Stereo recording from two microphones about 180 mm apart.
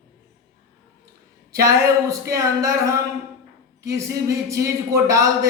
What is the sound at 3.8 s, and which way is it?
A man's voice, 20° right (ahead or behind).